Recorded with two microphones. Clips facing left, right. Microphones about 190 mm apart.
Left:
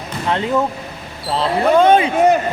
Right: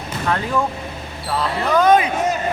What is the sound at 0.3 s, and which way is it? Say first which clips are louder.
Speech: left 3 dB; 20° left (ahead or behind).